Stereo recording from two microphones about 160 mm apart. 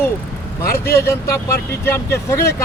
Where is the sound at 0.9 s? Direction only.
15° left (ahead or behind).